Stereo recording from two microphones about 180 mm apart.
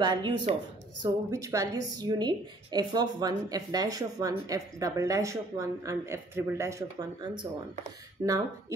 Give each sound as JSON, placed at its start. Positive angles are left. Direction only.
{"t": 0.0, "sound": "a woman's voice", "side_deg": -25}